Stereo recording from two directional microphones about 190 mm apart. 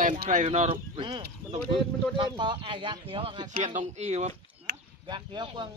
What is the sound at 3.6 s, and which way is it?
Speech, 40° right (ahead or behind).